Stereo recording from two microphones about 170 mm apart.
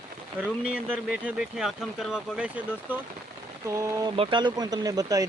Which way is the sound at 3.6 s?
20° right (ahead or behind).